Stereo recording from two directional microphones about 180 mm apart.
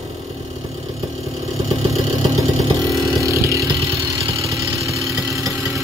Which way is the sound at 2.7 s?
15° right (ahead or behind).